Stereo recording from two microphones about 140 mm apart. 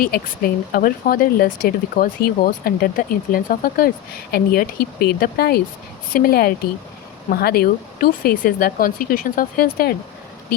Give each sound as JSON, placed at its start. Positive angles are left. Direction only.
{"t": 0.0, "sound": "speech", "side_deg": 90}